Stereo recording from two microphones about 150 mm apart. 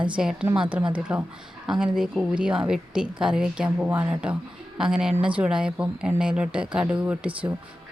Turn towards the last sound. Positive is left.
turn(degrees=-10)  # may be behind; listen again after turning